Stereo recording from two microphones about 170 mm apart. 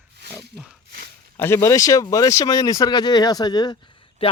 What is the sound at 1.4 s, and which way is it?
Speech, 15° left (ahead or behind).